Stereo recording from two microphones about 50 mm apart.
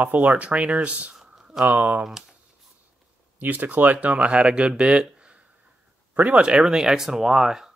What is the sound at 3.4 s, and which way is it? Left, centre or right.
Speech, right.